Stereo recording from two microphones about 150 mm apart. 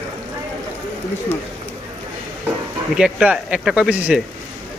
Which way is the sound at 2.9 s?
5° right (ahead or behind).